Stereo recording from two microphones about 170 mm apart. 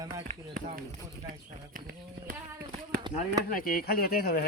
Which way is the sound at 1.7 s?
55° right (ahead or behind).